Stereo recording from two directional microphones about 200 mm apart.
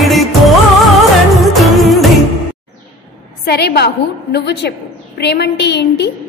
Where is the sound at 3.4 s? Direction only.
55° left (ahead or behind).